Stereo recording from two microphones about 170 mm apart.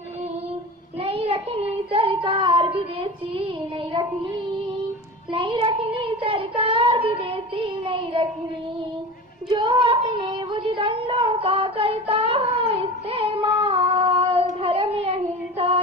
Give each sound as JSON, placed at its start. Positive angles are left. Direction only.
{"t": 1.0, "sound": "child singing", "side_deg": -35}
{"t": 9.5, "sound": "a sound", "side_deg": -25}
{"t": 13.6, "sound": "singing", "side_deg": -35}
{"t": 15.5, "sound": "female singing", "side_deg": -35}